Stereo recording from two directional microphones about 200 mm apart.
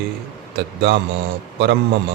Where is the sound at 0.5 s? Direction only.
60° right (ahead or behind).